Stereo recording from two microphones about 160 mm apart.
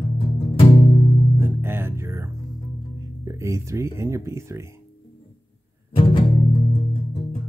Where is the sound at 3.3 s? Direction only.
20° right (ahead or behind).